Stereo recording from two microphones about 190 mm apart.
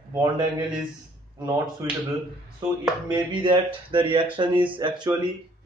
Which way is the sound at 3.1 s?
25° right (ahead or behind).